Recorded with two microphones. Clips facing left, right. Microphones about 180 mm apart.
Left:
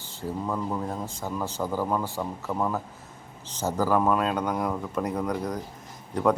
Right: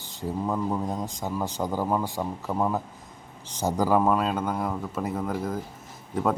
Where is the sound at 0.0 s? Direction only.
15° right (ahead or behind).